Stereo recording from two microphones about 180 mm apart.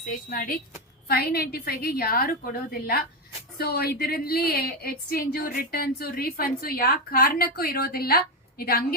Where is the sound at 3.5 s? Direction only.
60° left (ahead or behind).